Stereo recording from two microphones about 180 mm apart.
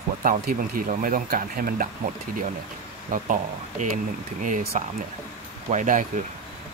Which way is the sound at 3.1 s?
50° right (ahead or behind).